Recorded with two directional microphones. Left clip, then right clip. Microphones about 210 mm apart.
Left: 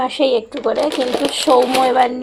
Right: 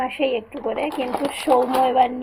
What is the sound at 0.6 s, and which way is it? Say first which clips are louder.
Speech: left 6 dB; 15° left (ahead or behind).